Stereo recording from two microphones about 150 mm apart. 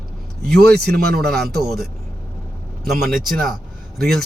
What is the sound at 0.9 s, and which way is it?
Speech, 85° right.